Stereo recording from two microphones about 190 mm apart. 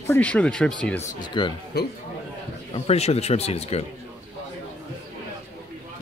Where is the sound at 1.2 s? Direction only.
25° left (ahead or behind).